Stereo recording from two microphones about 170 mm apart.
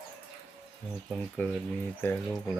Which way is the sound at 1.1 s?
5° left (ahead or behind).